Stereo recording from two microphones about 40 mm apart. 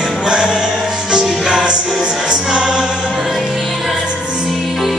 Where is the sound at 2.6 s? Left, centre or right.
Centre.